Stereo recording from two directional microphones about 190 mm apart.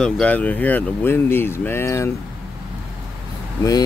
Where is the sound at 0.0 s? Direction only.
5° left (ahead or behind).